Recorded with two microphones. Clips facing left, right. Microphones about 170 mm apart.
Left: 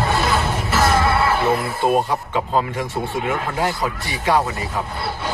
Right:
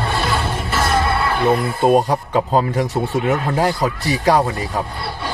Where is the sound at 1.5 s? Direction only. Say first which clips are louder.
Right 4 dB; 50° right (ahead or behind).